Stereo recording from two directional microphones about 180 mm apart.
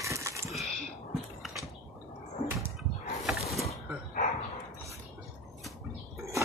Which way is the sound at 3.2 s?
Centre (ahead or behind).